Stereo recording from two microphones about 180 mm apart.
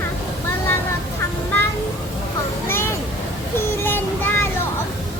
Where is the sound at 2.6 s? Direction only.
15° left (ahead or behind).